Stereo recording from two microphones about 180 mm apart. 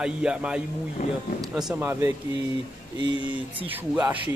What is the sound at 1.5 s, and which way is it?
Speech, centre (ahead or behind).